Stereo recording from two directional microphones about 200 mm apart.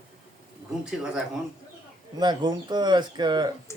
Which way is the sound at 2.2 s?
20° right (ahead or behind).